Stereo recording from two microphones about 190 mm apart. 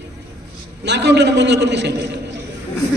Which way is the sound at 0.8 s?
65° right (ahead or behind).